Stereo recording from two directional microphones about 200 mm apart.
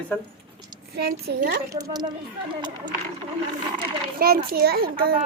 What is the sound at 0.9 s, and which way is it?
Speech, 50° right (ahead or behind).